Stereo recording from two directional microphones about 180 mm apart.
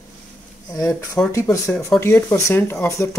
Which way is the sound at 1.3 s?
15° left (ahead or behind).